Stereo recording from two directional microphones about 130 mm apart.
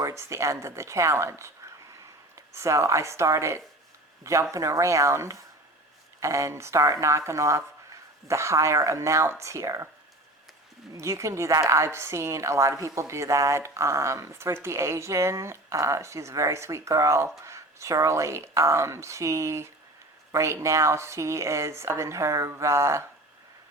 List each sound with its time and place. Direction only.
0.0 s a woman's voice: 20° right (ahead or behind)
10.9 s a woman's voice: 25° right (ahead or behind)